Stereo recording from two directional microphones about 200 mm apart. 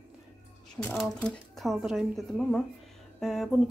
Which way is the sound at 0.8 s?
5° left (ahead or behind).